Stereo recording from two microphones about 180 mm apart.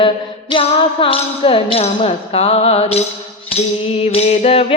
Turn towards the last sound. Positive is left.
turn(degrees=35)  # may be behind; listen again after turning